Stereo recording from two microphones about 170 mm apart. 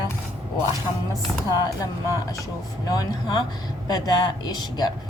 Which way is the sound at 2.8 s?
25° left (ahead or behind).